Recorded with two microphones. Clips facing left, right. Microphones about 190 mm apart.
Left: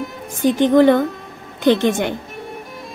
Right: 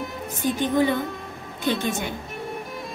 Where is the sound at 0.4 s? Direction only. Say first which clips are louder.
Left 9 dB; 85° left.